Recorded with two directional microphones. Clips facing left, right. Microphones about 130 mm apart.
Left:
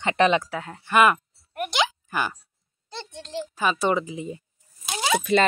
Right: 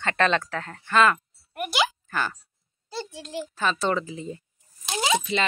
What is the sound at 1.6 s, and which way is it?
Speech, 5° right (ahead or behind).